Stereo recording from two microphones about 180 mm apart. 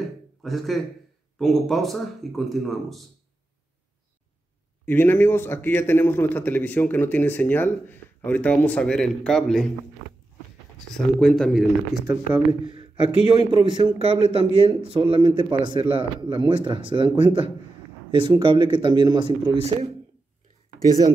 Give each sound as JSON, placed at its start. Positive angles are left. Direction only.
{"t": 0.4, "sound": "speech", "side_deg": 0}
{"t": 4.8, "sound": "a man's voice", "side_deg": 10}
{"t": 10.9, "sound": "speech", "side_deg": 0}
{"t": 13.3, "sound": "a man's voice", "side_deg": -25}